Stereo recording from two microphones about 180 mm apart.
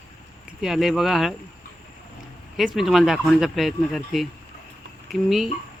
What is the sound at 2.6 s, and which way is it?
Speech, centre (ahead or behind).